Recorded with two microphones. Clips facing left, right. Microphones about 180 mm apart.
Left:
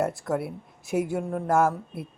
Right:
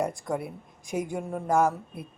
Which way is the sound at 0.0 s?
5° left (ahead or behind).